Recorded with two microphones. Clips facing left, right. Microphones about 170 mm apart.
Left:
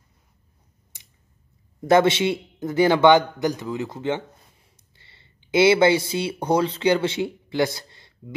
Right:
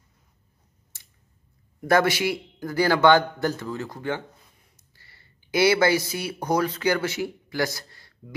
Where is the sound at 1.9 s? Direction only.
25° left (ahead or behind).